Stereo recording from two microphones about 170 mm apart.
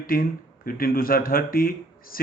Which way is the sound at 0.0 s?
55° left (ahead or behind).